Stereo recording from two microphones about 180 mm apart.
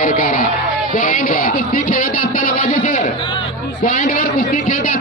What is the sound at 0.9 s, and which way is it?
Music, 50° left (ahead or behind).